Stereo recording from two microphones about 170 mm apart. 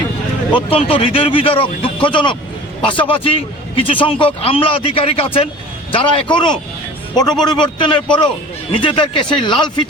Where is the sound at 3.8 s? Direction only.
30° left (ahead or behind).